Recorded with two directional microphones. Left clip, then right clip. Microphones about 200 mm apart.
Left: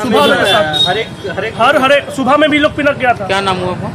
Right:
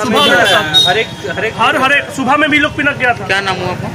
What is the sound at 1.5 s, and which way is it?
A man's voice, 55° left (ahead or behind).